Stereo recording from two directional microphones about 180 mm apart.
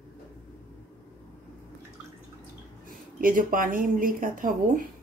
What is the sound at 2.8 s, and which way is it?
A woman's voice, 50° right (ahead or behind).